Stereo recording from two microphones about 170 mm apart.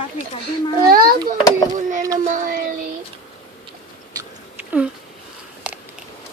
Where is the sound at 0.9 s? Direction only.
55° right (ahead or behind).